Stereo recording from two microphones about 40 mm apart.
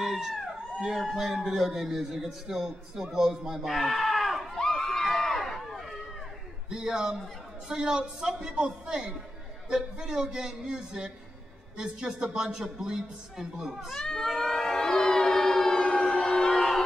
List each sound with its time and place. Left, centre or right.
0.0 s dog: centre
0.7 s a man's voice: centre
4.6 s a sound: centre
6.7 s a man's voice: centre
13.9 s crowd: centre
14.5 s siren: centre